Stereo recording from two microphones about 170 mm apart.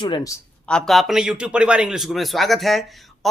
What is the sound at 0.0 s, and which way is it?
Speech, 25° left (ahead or behind).